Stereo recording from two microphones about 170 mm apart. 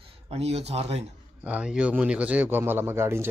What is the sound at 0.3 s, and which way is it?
Speech, 35° right (ahead or behind).